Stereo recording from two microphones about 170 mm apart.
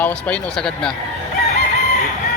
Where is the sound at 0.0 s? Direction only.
5° left (ahead or behind).